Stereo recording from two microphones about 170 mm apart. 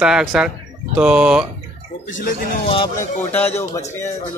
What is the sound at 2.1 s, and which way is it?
Speech, 55° left (ahead or behind).